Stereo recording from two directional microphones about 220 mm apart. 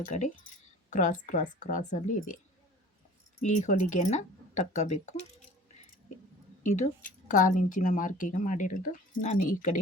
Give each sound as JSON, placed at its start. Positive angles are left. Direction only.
{"t": 0.0, "sound": "speech", "side_deg": 35}
{"t": 3.4, "sound": "speech", "side_deg": 35}
{"t": 6.6, "sound": "speech", "side_deg": 35}